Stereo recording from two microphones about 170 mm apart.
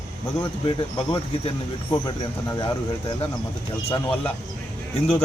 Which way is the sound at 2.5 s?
15° left (ahead or behind).